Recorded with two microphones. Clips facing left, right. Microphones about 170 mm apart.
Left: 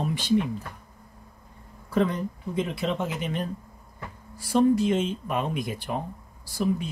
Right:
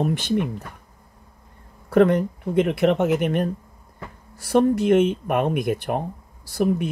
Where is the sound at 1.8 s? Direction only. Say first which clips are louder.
Right 8 dB; 65° right (ahead or behind).